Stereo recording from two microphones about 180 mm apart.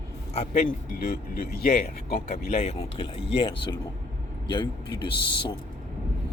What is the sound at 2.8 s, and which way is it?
Speech, 30° left (ahead or behind).